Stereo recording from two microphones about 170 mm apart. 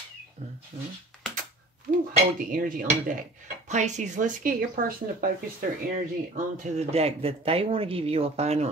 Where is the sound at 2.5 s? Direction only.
55° right (ahead or behind).